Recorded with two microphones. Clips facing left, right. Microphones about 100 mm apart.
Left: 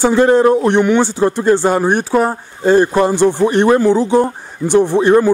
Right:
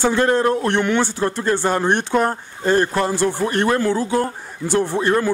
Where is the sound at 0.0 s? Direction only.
15° left (ahead or behind).